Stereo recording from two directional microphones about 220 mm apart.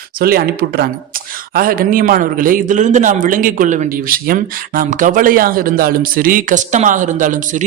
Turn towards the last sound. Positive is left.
turn(degrees=-35)  # may be behind; listen again after turning